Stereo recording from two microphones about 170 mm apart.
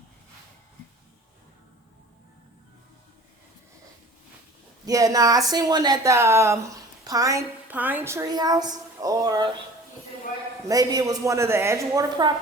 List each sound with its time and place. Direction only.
4.9 s speech: 20° right (ahead or behind)
10.7 s speech: 20° right (ahead or behind)